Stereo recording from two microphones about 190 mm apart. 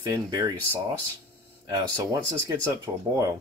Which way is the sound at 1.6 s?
15° right (ahead or behind).